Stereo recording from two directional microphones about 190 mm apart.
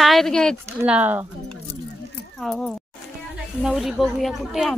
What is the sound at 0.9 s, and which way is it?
Speech, 10° right (ahead or behind).